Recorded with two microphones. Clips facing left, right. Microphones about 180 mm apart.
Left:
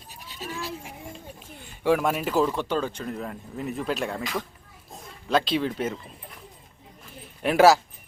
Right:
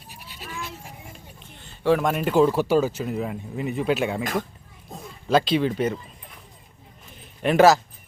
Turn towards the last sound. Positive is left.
turn(degrees=10)  # may be behind; listen again after turning